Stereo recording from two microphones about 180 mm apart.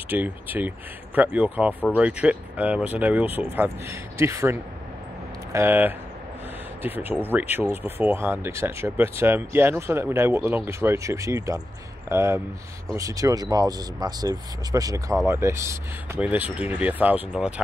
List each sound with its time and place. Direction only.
0.1 s speech: 10° right (ahead or behind)